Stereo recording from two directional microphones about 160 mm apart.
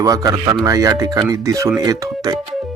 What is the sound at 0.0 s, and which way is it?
Speech, 20° right (ahead or behind).